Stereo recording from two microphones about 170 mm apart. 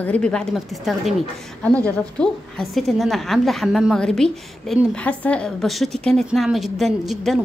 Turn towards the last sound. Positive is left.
turn(degrees=0)  # may be behind; listen again after turning